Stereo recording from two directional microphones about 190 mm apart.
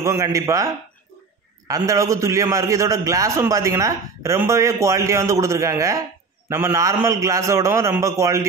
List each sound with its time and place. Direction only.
0.0 s a man's voice: 15° right (ahead or behind)
1.7 s a man's voice: 15° right (ahead or behind)